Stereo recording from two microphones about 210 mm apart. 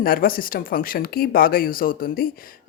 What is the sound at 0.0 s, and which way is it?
Speech, 45° left (ahead or behind).